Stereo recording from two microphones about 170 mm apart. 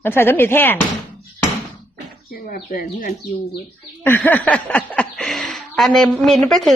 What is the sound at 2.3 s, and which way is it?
Speech, 55° left (ahead or behind).